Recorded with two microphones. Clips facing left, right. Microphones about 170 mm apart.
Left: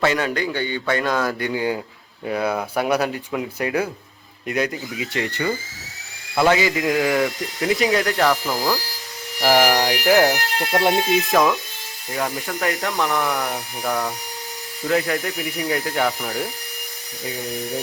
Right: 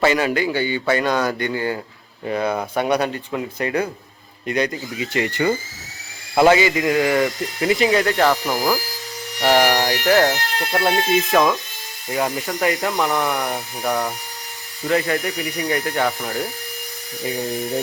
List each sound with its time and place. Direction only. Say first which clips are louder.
0.0 s speech: right 3 dB; 5° right (ahead or behind)
6.5 s speech: right 2 dB; centre (ahead or behind)
9.4 s speech: even; 5° left (ahead or behind)
11.3 s speech: right 1 dB; 5° right (ahead or behind)